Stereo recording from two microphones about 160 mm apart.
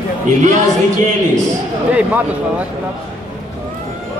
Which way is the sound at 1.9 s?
10° right (ahead or behind).